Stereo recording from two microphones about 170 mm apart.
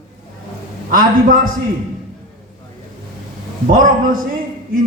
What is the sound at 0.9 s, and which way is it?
Speech, 55° right (ahead or behind).